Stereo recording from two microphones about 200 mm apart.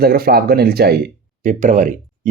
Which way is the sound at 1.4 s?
40° right (ahead or behind).